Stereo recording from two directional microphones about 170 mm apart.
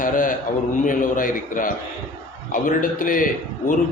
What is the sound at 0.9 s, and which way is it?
A man's voice, 50° left (ahead or behind).